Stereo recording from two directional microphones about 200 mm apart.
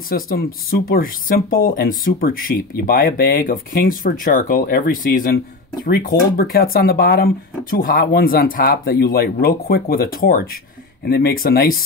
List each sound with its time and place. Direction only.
0.1 s speech: 45° left (ahead or behind)